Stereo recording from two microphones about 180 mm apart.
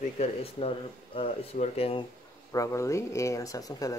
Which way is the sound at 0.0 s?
35° left (ahead or behind).